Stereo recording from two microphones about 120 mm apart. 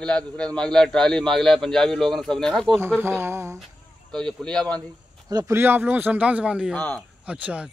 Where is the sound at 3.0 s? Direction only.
20° right (ahead or behind).